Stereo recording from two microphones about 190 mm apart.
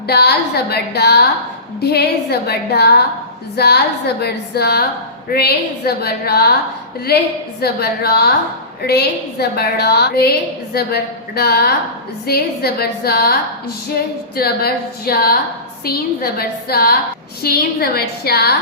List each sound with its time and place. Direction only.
0.1 s a woman's voice: 60° left (ahead or behind)
13.9 s female singing: 55° left (ahead or behind)
17.4 s a woman's voice: 55° left (ahead or behind)